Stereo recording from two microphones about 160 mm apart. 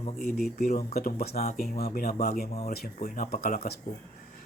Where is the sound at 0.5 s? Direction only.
65° left (ahead or behind).